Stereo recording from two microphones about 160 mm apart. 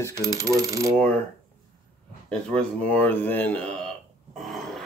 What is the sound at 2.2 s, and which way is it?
Speech, 5° left (ahead or behind).